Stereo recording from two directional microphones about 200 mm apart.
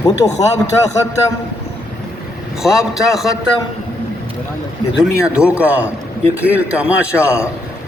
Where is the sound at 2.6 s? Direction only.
Centre (ahead or behind).